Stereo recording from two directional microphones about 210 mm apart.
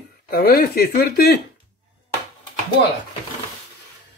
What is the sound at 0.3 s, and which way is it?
Speech, 45° left (ahead or behind).